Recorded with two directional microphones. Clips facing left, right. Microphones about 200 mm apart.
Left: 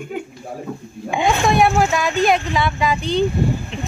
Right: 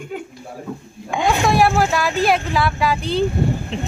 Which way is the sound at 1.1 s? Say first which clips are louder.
Even; centre (ahead or behind).